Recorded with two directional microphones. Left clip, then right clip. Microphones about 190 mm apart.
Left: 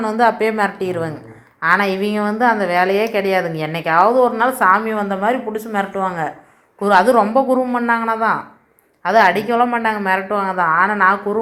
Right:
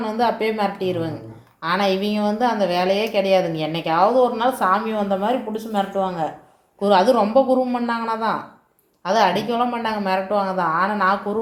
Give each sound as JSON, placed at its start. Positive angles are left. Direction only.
{"t": 0.2, "sound": "a woman's voice", "side_deg": 30}